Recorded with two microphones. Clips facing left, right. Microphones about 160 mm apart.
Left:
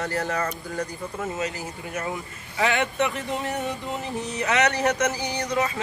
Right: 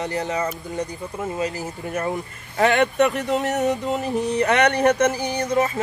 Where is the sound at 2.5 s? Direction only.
50° right (ahead or behind).